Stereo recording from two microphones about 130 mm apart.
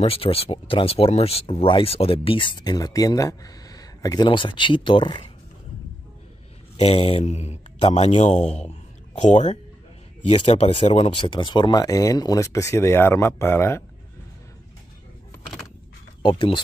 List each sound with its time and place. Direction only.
0.0 s speech: 45° left (ahead or behind)
6.8 s speech: 45° left (ahead or behind); by 9.6 s 65° left (ahead or behind)
10.2 s speech: 50° left (ahead or behind); by 13.8 s 20° left (ahead or behind)
16.2 s speech: 40° left (ahead or behind)